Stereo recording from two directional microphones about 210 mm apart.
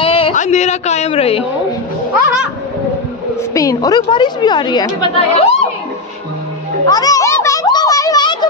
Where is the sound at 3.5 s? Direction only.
15° left (ahead or behind).